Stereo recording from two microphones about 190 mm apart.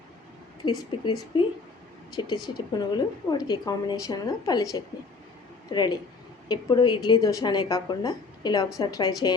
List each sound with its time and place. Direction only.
0.8 s a woman's voice: 25° left (ahead or behind)